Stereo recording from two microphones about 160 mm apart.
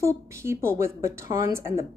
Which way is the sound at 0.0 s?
15° right (ahead or behind).